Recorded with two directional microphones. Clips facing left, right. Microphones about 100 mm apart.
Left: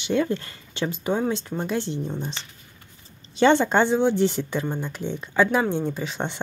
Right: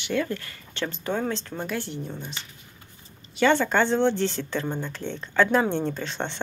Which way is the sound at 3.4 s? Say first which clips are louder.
Left 3 dB; 20° left (ahead or behind).